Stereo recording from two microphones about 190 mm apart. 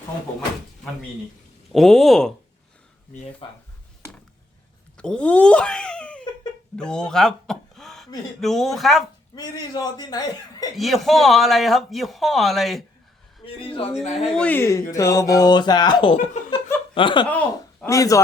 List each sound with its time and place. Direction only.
1.7 s a man's voice: centre (ahead or behind)
3.4 s speech: 25° left (ahead or behind)
4.9 s a man's voice: 5° left (ahead or behind)
9.3 s speech: 20° left (ahead or behind)
10.8 s a man's voice: centre (ahead or behind)
13.4 s speech: 30° left (ahead or behind)
14.3 s speech: 10° left (ahead or behind); by 17.2 s 25° left (ahead or behind)
17.2 s speech: 10° left (ahead or behind)